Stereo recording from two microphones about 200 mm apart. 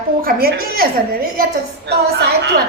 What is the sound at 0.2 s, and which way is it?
Speech, 45° right (ahead or behind).